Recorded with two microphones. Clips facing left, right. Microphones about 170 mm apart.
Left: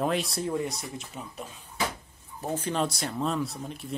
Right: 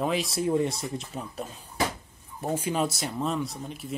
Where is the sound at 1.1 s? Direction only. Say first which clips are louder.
Right 4 dB; 30° right (ahead or behind).